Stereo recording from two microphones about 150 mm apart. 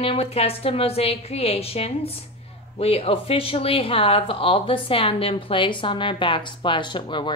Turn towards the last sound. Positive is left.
turn(degrees=30)  # may be behind; listen again after turning